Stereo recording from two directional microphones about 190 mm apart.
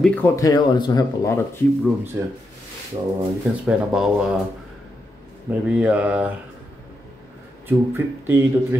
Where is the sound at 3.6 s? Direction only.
5° right (ahead or behind).